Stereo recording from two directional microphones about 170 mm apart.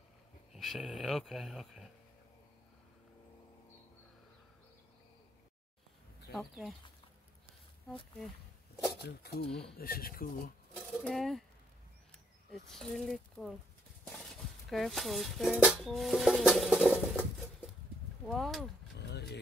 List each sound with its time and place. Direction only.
0.5 s speech: centre (ahead or behind)
6.3 s speech: centre (ahead or behind)
9.0 s speech: 70° left (ahead or behind)
9.5 s speech: 5° left (ahead or behind)
9.8 s speech: 60° left (ahead or behind)
11.0 s speech: centre (ahead or behind)
12.6 s speech: 5° left (ahead or behind)
17.0 s patter: centre (ahead or behind)
18.2 s speech: centre (ahead or behind)
18.9 s vehicle: 80° left